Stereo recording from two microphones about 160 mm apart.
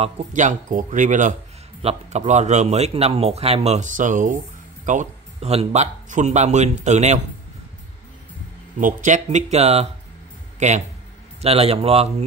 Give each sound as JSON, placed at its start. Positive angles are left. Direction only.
{"t": 0.0, "sound": "a man's voice", "side_deg": -50}
{"t": 1.8, "sound": "a man's voice", "side_deg": -40}
{"t": 8.7, "sound": "a man's voice", "side_deg": -50}